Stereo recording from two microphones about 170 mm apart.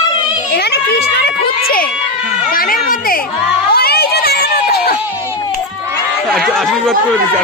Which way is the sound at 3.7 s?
65° left (ahead or behind).